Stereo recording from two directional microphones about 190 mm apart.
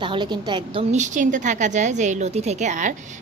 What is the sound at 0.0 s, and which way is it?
Speech, 25° right (ahead or behind).